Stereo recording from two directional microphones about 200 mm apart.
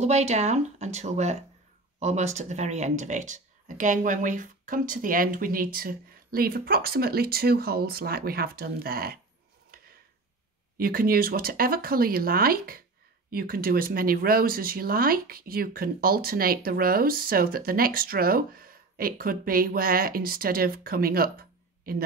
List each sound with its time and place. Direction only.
0.0 s speech: 35° right (ahead or behind)
9.7 s a sound: 50° right (ahead or behind)
10.8 s speech: 45° right (ahead or behind)